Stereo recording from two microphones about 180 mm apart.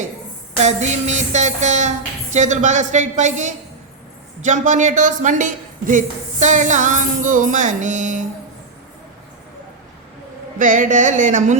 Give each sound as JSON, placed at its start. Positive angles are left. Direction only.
{"t": 0.6, "sound": "a sound", "side_deg": -40}
{"t": 4.4, "sound": "speech", "side_deg": -40}
{"t": 10.6, "sound": "speech", "side_deg": -45}